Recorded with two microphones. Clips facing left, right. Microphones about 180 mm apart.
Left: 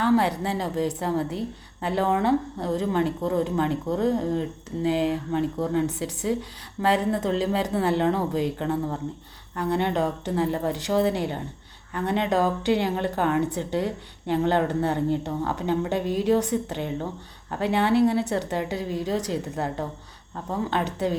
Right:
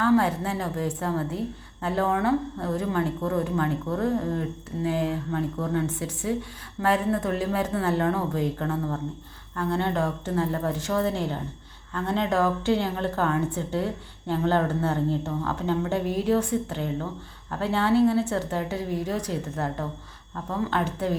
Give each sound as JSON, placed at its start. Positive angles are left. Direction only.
{"t": 0.0, "sound": "speech", "side_deg": 15}